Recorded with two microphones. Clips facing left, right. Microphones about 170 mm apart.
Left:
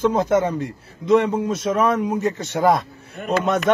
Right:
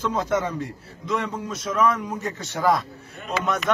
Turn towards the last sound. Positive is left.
turn(degrees=50)  # may be behind; listen again after turning